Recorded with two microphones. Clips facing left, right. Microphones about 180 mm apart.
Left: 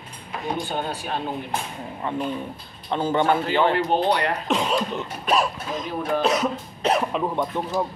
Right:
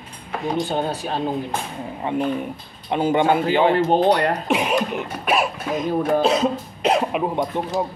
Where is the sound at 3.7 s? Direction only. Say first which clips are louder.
Right 4 dB; 45° right (ahead or behind).